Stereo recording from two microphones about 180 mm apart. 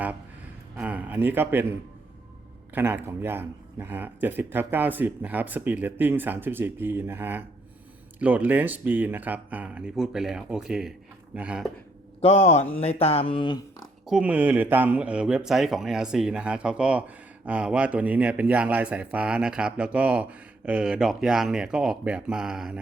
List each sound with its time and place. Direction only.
0.8 s speech: 10° right (ahead or behind)
2.7 s speech: 10° right (ahead or behind)
12.2 s speech: 40° left (ahead or behind)
14.1 s speech: 5° right (ahead or behind)